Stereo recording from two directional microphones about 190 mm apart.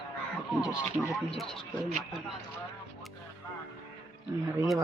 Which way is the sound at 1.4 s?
Centre (ahead or behind).